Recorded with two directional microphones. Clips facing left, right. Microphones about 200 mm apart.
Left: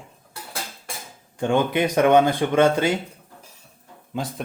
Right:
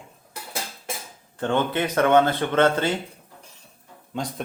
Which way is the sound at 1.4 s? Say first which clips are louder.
Left 3 dB; 10° left (ahead or behind).